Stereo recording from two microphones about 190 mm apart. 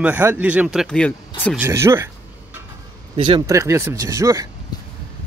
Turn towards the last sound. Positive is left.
turn(degrees=-15)  # may be behind; listen again after turning